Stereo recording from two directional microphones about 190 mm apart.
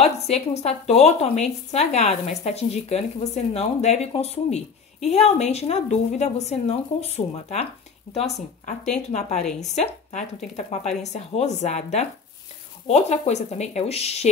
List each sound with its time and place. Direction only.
0.0 s speech: 35° left (ahead or behind)
9.6 s speech: 35° left (ahead or behind)